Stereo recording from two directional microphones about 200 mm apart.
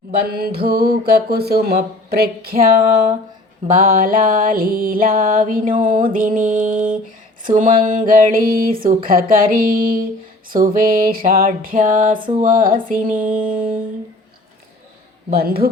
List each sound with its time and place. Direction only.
0.3 s music: 50° right (ahead or behind)
3.7 s music: 40° right (ahead or behind)
15.4 s music: 50° right (ahead or behind)